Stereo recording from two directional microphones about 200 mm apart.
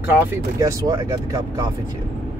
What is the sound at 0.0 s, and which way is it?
Speech, 10° right (ahead or behind).